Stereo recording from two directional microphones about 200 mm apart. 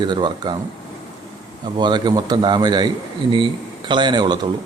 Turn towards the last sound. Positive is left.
turn(degrees=-20)  # may be behind; listen again after turning